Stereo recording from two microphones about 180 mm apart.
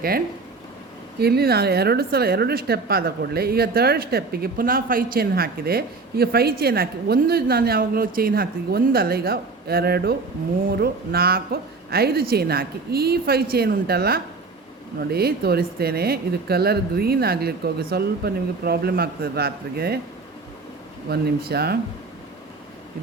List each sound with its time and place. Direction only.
1.2 s a woman's voice: 60° right (ahead or behind)
21.1 s a woman's voice: 60° right (ahead or behind)